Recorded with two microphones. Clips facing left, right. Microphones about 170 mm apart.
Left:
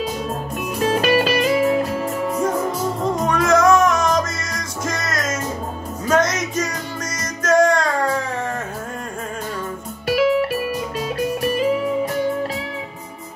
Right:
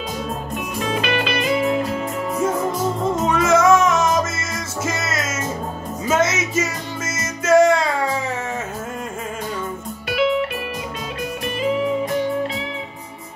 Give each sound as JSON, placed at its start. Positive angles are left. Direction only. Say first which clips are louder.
{"t": 0.7, "sound": "music", "louder": "left 5 dB", "side_deg": 40}
{"t": 2.0, "sound": "music", "louder": "left 1 dB", "side_deg": 0}
{"t": 10.0, "sound": "music", "louder": "left 3 dB", "side_deg": 40}